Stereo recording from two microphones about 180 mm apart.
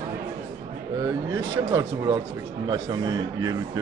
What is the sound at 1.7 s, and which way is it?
Speech, 20° right (ahead or behind).